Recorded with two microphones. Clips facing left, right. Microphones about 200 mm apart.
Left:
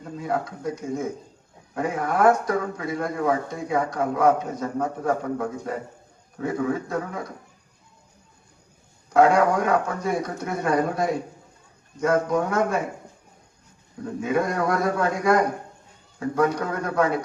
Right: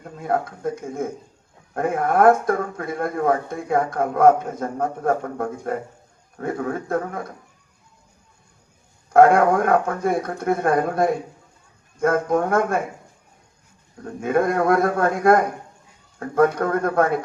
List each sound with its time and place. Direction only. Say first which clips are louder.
0.0 s speech: right 3 dB; 50° right (ahead or behind)
9.1 s speech: right 4 dB; 55° right (ahead or behind)
14.0 s speech: right 3 dB; 55° right (ahead or behind)